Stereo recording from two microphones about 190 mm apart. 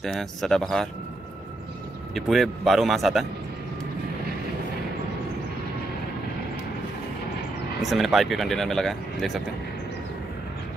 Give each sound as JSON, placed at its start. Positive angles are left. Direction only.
{"t": 0.0, "sound": "speech", "side_deg": 0}
{"t": 2.1, "sound": "speech", "side_deg": 0}
{"t": 7.8, "sound": "speech", "side_deg": 0}